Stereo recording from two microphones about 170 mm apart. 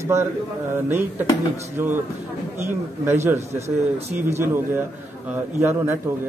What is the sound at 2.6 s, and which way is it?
A man's voice, 15° right (ahead or behind).